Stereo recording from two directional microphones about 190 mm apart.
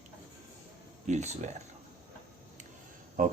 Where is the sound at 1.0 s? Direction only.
40° right (ahead or behind).